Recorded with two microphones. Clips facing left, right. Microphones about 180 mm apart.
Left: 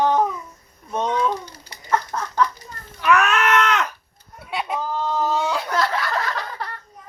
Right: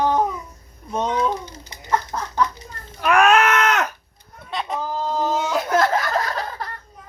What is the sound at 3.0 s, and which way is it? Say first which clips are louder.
Baby cry: right 3 dB; 50° right (ahead or behind).